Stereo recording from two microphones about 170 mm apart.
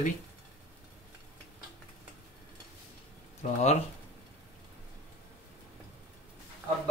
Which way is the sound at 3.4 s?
45° left (ahead or behind).